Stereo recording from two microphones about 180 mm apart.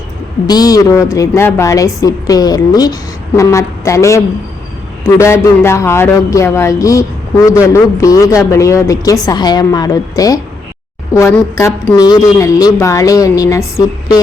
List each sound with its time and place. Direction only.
0.4 s a woman's voice: 20° left (ahead or behind)